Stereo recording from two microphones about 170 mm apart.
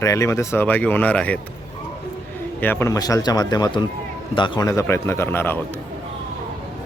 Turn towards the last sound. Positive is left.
turn(degrees=15)  # may be behind; listen again after turning